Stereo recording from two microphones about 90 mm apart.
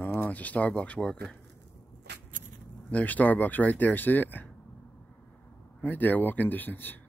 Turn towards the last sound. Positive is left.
turn(degrees=20)  # may be behind; listen again after turning